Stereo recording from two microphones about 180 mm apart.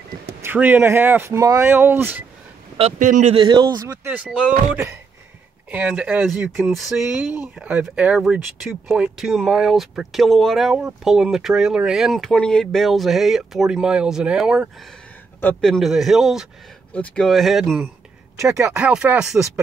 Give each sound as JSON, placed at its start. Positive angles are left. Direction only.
{"t": 0.4, "sound": "speech", "side_deg": -10}
{"t": 2.8, "sound": "speech", "side_deg": -45}
{"t": 3.3, "sound": "speech", "side_deg": -25}
{"t": 18.4, "sound": "speech", "side_deg": -15}
{"t": 18.7, "sound": "speech", "side_deg": -5}